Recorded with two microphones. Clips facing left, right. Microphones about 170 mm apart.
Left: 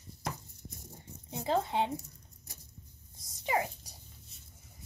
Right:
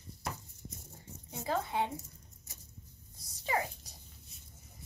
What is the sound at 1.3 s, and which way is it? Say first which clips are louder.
Zipper: left 4 dB; 25° left (ahead or behind).